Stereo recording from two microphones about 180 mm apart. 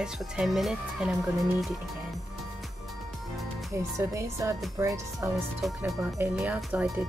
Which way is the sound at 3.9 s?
15° right (ahead or behind).